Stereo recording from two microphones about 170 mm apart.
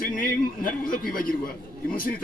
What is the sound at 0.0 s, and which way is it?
A man's voice, 55° left (ahead or behind).